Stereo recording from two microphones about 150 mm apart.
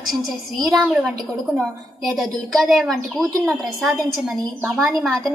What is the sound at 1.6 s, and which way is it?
Child singing, centre (ahead or behind).